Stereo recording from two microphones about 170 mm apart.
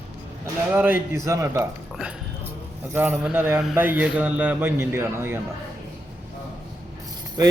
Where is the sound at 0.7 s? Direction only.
10° right (ahead or behind).